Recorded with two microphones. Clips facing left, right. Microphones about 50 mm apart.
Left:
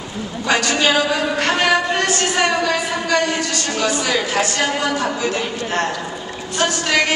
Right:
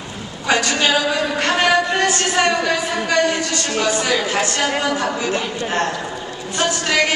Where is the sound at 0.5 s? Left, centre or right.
Centre.